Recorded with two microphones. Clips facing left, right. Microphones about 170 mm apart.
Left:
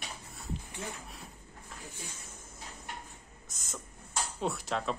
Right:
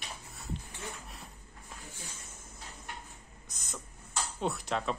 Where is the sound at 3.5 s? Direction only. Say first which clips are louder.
Even; centre (ahead or behind).